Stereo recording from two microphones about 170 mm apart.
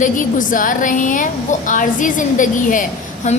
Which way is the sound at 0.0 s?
50° left (ahead or behind).